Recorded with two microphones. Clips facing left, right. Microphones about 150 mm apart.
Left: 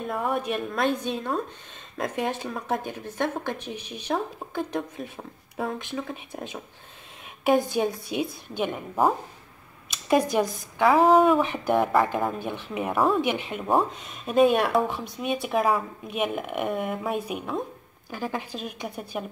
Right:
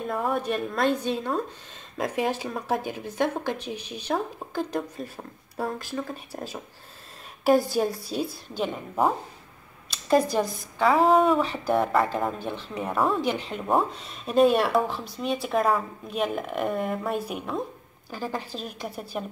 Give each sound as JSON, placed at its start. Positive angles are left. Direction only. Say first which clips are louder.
{"t": 0.0, "sound": "a woman's voice", "louder": "even", "side_deg": 0}
{"t": 8.5, "sound": "speech", "louder": "left 1 dB", "side_deg": 10}
{"t": 10.0, "sound": "speech", "louder": "even", "side_deg": 15}
{"t": 10.8, "sound": "a woman's voice", "louder": "left 2 dB", "side_deg": 0}
{"t": 11.4, "sound": "speech", "louder": "left 1 dB", "side_deg": 15}
{"t": 11.7, "sound": "a woman's voice", "louder": "left 1 dB", "side_deg": 0}
{"t": 12.4, "sound": "speech", "louder": "left 1 dB", "side_deg": 10}
{"t": 13.2, "sound": "speech", "louder": "left 1 dB", "side_deg": 15}
{"t": 13.5, "sound": "a woman's voice", "louder": "left 1 dB", "side_deg": 0}
{"t": 18.1, "sound": "a woman's voice", "louder": "left 1 dB", "side_deg": 15}